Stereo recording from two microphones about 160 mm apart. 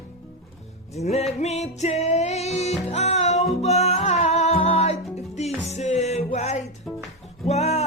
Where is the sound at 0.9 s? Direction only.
40° left (ahead or behind).